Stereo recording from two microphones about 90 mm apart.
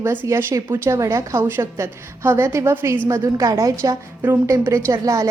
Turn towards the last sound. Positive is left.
turn(degrees=-40)  # may be behind; listen again after turning